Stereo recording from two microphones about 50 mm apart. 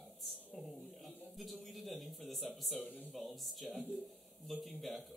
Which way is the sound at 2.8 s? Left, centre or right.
Left.